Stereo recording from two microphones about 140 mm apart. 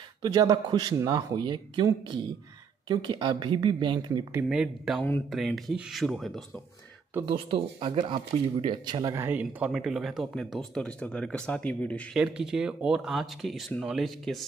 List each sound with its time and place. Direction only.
0.2 s speech: 25° right (ahead or behind)
2.9 s speech: 35° right (ahead or behind)
4.5 s speech: 5° right (ahead or behind)
7.2 s speech: 40° right (ahead or behind); by 9.3 s 25° right (ahead or behind)
9.3 s speech: 10° right (ahead or behind); by 12.2 s 10° left (ahead or behind)
12.2 s speech: 5° right (ahead or behind)